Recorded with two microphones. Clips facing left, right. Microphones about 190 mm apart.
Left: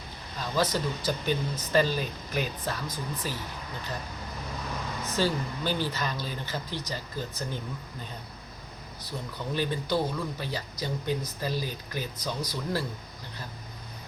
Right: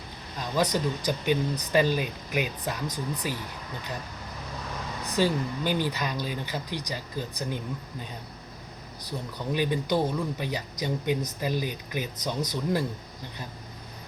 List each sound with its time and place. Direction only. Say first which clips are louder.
0.5 s speech: right 2 dB; 15° right (ahead or behind)
5.1 s speech: right 3 dB; 15° right (ahead or behind)
9.0 s speech: right 2 dB; 15° right (ahead or behind)